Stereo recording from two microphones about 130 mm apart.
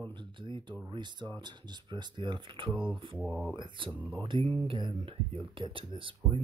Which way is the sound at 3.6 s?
40° right (ahead or behind).